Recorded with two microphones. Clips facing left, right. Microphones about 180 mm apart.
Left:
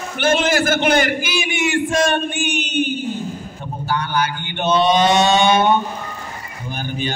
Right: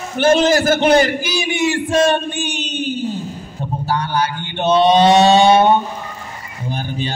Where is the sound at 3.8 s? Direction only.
35° right (ahead or behind).